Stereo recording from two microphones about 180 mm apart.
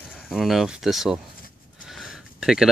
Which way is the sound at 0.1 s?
Centre (ahead or behind).